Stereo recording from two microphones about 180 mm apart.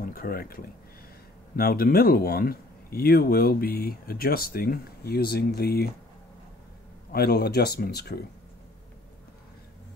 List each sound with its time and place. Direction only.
0.0 s speech: 55° left (ahead or behind)
7.1 s speech: 60° left (ahead or behind)